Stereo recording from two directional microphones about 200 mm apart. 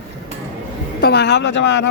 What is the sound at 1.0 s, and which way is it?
Speech, 55° left (ahead or behind).